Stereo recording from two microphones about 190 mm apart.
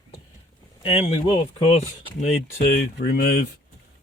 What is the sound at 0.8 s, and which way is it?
Speech, 30° left (ahead or behind).